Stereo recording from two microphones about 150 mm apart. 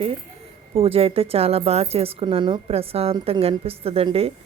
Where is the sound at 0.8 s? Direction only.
40° right (ahead or behind).